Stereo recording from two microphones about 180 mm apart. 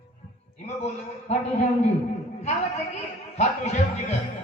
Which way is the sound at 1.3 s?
40° left (ahead or behind).